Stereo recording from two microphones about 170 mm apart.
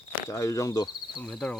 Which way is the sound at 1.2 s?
5° left (ahead or behind).